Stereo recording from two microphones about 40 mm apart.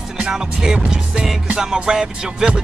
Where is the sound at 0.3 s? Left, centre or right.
Centre.